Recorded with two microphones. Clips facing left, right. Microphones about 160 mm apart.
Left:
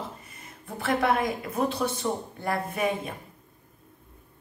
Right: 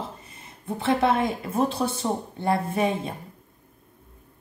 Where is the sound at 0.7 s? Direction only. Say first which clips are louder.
Right 3 dB; 25° right (ahead or behind).